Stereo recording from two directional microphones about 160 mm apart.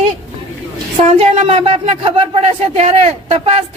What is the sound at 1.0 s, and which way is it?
Speech, 45° right (ahead or behind).